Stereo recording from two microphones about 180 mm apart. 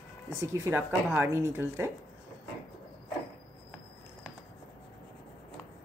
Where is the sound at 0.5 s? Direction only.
15° right (ahead or behind).